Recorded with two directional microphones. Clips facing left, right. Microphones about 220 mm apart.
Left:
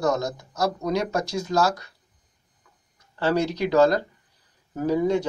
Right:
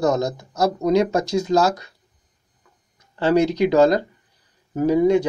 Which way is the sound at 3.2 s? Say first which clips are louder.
Right 6 dB; 20° right (ahead or behind).